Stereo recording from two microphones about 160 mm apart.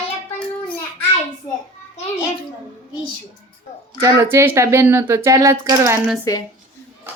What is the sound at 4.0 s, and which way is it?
Speech, 15° right (ahead or behind).